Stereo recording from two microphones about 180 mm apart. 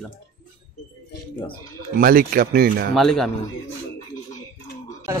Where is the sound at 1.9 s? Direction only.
55° right (ahead or behind).